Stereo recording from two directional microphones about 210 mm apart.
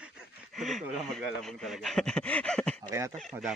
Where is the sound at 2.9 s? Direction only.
15° right (ahead or behind).